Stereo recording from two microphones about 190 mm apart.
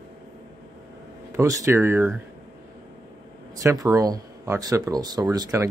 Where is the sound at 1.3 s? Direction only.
15° right (ahead or behind).